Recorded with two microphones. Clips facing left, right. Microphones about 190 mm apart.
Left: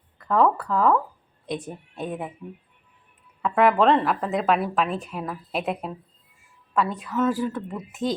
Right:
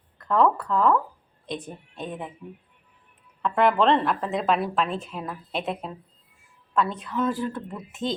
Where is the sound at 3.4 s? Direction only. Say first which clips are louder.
Left 2 dB; 5° left (ahead or behind).